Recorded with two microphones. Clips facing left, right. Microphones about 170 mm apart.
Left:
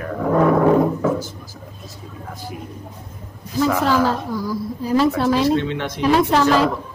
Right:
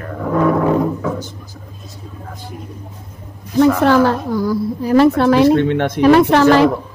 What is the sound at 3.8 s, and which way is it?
A woman's voice, 65° right (ahead or behind).